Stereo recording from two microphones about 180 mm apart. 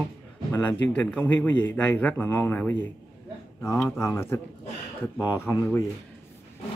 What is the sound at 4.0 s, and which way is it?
Cutlery, 15° left (ahead or behind).